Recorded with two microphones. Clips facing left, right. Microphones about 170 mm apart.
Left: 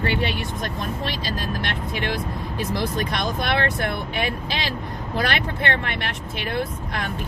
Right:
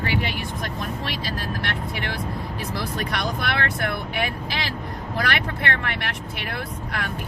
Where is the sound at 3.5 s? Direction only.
20° left (ahead or behind).